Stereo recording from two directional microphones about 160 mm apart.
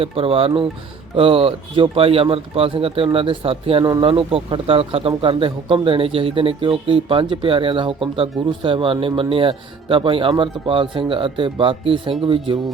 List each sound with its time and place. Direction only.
0.0 s speech: 35° right (ahead or behind)